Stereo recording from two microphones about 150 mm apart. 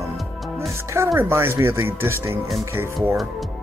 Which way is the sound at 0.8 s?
20° right (ahead or behind).